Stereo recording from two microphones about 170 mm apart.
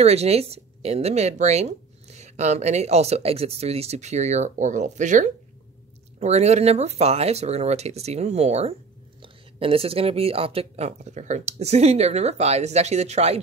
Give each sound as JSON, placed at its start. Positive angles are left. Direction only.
{"t": 0.0, "sound": "speech", "side_deg": -40}